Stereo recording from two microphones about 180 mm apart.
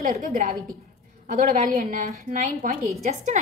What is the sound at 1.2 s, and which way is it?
A woman's voice, 50° right (ahead or behind).